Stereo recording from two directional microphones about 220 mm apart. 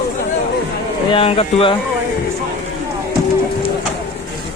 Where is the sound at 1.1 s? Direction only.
25° left (ahead or behind).